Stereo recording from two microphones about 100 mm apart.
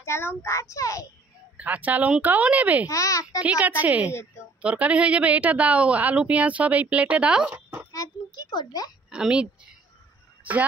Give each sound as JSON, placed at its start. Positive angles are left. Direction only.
{"t": 0.0, "sound": "a child's voice", "side_deg": 25}
{"t": 1.6, "sound": "a woman's voice", "side_deg": -15}
{"t": 2.9, "sound": "a child's voice", "side_deg": 35}
{"t": 3.4, "sound": "a woman's voice", "side_deg": -15}
{"t": 7.5, "sound": "a sound", "side_deg": -20}
{"t": 7.9, "sound": "a sound", "side_deg": 40}
{"t": 9.1, "sound": "a woman's voice", "side_deg": -10}